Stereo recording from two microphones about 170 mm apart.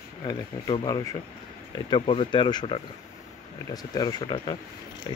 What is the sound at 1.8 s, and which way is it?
Speech, 30° left (ahead or behind).